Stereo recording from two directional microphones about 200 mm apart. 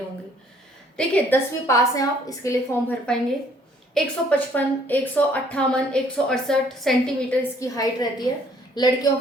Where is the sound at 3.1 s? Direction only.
5° left (ahead or behind).